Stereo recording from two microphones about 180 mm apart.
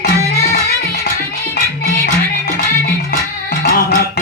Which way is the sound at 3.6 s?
60° left (ahead or behind).